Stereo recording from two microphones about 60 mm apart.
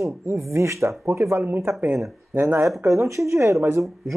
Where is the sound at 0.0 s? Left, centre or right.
Right.